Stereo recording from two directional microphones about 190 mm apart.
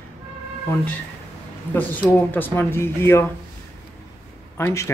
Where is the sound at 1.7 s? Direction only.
10° left (ahead or behind).